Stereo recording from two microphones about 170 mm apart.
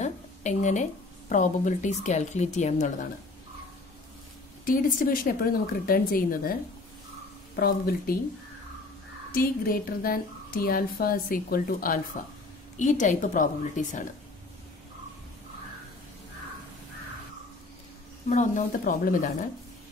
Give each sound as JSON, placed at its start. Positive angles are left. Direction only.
{"t": 0.0, "sound": "a sound", "side_deg": 45}
{"t": 1.3, "sound": "a woman's voice", "side_deg": 45}
{"t": 4.6, "sound": "speech", "side_deg": 55}
{"t": 7.5, "sound": "speech", "side_deg": 65}
{"t": 9.3, "sound": "speech", "side_deg": 60}
{"t": 12.7, "sound": "a woman's voice", "side_deg": 45}
{"t": 18.3, "sound": "a woman's voice", "side_deg": 50}